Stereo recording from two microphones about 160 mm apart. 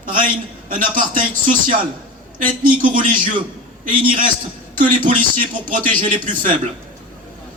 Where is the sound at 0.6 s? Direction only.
60° right (ahead or behind).